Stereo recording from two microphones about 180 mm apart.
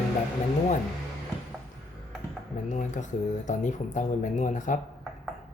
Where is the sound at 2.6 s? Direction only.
45° left (ahead or behind).